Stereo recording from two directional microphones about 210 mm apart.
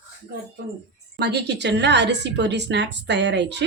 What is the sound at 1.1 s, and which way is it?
A woman's voice, 50° right (ahead or behind).